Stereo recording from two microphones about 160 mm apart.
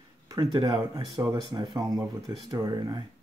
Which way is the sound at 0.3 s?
25° right (ahead or behind).